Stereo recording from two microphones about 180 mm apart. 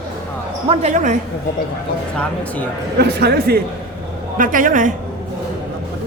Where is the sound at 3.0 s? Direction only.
65° right (ahead or behind).